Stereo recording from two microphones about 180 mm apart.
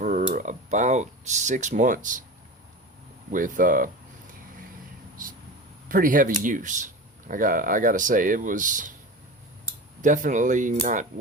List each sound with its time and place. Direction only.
0.0 s speech: 45° right (ahead or behind)
3.3 s speech: 45° right (ahead or behind)
5.9 s speech: 50° right (ahead or behind)
10.0 s speech: 45° right (ahead or behind)